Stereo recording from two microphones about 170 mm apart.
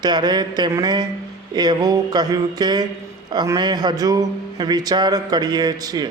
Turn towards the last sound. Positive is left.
turn(degrees=-25)  # may be behind; listen again after turning